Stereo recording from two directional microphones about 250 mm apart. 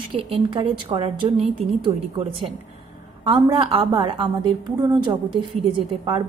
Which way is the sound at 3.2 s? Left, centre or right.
Right.